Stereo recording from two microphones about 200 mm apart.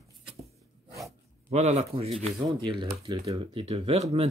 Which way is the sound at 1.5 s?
35° right (ahead or behind).